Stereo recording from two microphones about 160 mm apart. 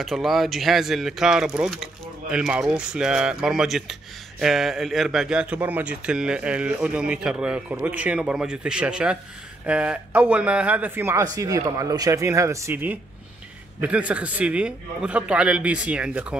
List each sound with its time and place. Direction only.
0.0 s a man's voice: centre (ahead or behind)